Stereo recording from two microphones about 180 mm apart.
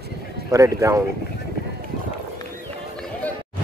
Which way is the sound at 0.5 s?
15° right (ahead or behind).